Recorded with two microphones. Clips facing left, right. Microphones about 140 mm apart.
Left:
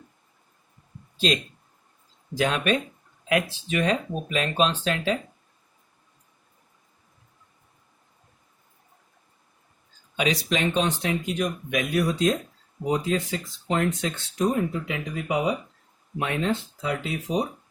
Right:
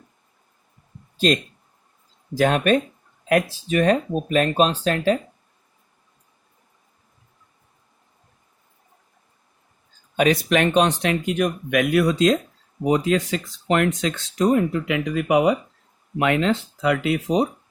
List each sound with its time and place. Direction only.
2.3 s speech: 45° right (ahead or behind)
10.2 s speech: 50° right (ahead or behind); by 15.5 s 70° right (ahead or behind)
16.1 s speech: 90° right